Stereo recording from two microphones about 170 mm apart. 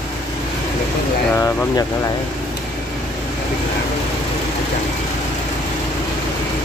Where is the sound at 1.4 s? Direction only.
20° left (ahead or behind).